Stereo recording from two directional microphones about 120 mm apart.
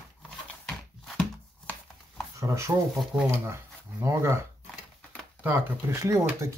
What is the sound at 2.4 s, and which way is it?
Speech, 25° right (ahead or behind).